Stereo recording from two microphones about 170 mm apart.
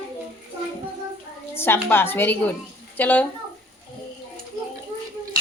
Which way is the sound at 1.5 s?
15° left (ahead or behind).